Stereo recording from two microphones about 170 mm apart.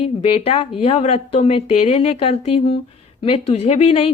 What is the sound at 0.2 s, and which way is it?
Speech, 35° left (ahead or behind).